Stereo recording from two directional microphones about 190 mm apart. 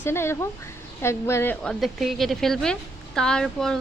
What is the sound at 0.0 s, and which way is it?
A woman's voice, 15° left (ahead or behind).